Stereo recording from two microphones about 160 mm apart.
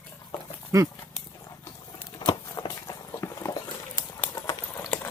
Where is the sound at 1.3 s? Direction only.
15° left (ahead or behind).